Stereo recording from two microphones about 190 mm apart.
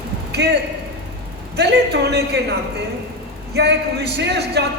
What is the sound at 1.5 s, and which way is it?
A man's voice, 60° right (ahead or behind).